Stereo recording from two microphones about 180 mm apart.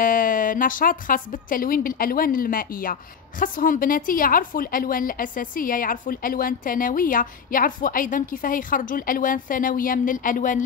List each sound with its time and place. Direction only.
0.0 s speech: 50° left (ahead or behind)